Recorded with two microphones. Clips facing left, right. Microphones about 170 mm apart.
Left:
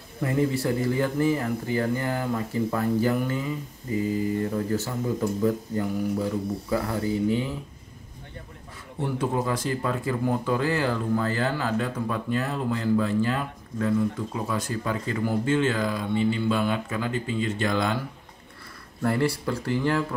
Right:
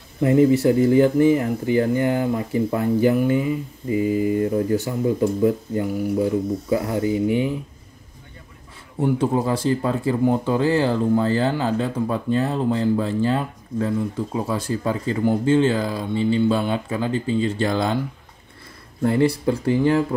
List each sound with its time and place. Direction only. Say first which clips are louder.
0.2 s speech: right 9 dB; 25° right (ahead or behind)
9.2 s speech: right 6 dB; 30° right (ahead or behind)
19.0 s speech: right 6 dB; 20° right (ahead or behind)